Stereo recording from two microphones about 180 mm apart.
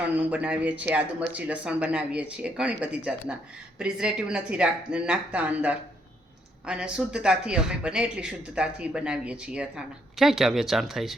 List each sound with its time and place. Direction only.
0.0 s speech: 10° right (ahead or behind)